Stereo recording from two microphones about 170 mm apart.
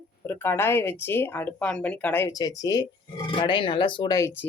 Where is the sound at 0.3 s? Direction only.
15° left (ahead or behind).